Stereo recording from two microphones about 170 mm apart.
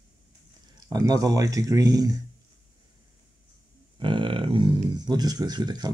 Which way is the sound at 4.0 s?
30° right (ahead or behind).